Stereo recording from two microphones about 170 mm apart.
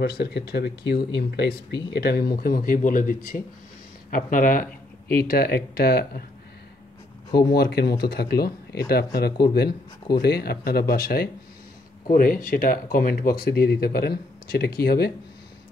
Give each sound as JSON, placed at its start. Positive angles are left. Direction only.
{"t": 0.0, "sound": "speech", "side_deg": 75}
{"t": 5.1, "sound": "speech", "side_deg": 65}
{"t": 7.2, "sound": "speech", "side_deg": 70}